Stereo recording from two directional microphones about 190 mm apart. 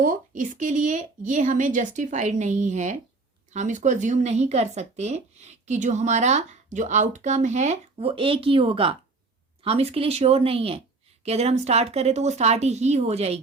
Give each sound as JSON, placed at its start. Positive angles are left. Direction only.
{"t": 0.0, "sound": "speech", "side_deg": -45}